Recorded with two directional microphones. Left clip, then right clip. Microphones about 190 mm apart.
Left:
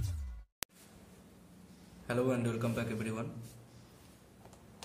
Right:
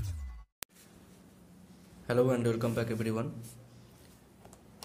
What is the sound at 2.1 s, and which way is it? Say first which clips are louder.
A man's voice: right 5 dB; 35° right (ahead or behind).